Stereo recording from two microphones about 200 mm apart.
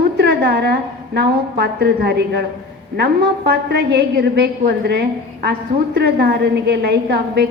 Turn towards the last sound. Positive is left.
turn(degrees=-55)  # may be behind; listen again after turning